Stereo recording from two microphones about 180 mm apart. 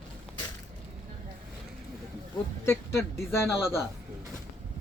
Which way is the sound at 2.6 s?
15° left (ahead or behind).